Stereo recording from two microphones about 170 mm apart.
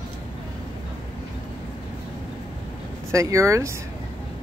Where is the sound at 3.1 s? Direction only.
20° right (ahead or behind).